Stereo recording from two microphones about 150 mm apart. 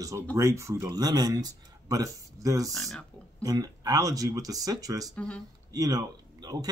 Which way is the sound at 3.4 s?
25° right (ahead or behind).